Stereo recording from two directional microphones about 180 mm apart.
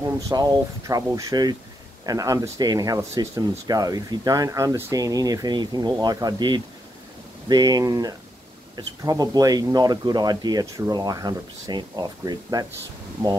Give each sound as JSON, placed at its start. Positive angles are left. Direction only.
{"t": 0.0, "sound": "speech", "side_deg": -20}